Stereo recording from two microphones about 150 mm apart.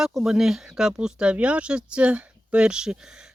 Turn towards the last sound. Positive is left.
turn(degrees=-5)  # may be behind; listen again after turning